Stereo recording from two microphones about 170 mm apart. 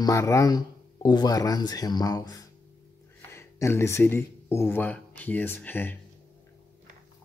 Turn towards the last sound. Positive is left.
turn(degrees=10)  # may be behind; listen again after turning